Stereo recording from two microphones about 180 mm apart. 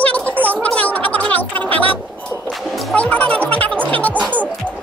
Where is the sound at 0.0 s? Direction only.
10° left (ahead or behind).